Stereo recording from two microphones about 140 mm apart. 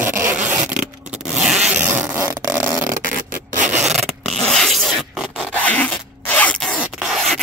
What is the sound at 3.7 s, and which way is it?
Zipper, 5° right (ahead or behind).